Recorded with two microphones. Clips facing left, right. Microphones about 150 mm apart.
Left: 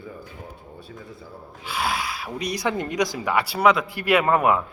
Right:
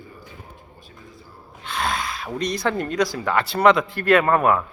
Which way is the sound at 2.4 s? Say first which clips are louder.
Right 2 dB; 10° left (ahead or behind).